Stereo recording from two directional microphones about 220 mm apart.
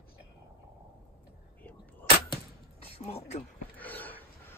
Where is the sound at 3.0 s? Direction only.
30° left (ahead or behind).